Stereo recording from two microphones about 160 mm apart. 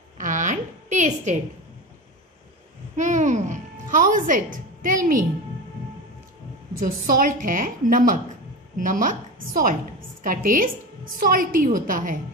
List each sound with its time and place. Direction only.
0.2 s a sound: 55° right (ahead or behind)
3.0 s speech: 50° right (ahead or behind)
6.8 s a woman's voice: 60° right (ahead or behind)